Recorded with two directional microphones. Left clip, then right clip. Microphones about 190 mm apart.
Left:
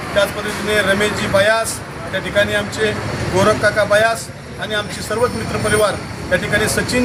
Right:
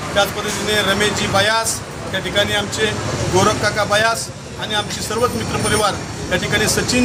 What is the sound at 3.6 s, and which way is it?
Speech, 20° right (ahead or behind).